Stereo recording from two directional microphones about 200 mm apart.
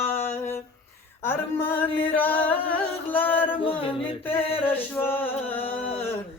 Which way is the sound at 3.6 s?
25° left (ahead or behind).